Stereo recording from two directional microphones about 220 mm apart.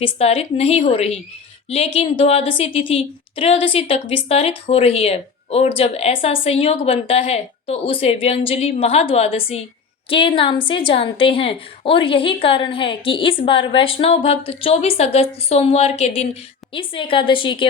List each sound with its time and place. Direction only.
0.0 s a woman's voice: 25° left (ahead or behind)